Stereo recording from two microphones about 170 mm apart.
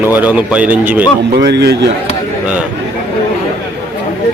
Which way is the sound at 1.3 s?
70° right (ahead or behind).